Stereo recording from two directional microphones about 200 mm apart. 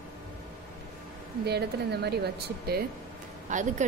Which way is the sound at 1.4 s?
55° right (ahead or behind).